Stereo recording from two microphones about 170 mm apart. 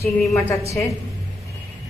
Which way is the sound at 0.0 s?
15° left (ahead or behind).